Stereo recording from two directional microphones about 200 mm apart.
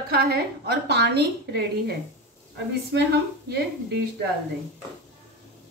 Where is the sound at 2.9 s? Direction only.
60° right (ahead or behind).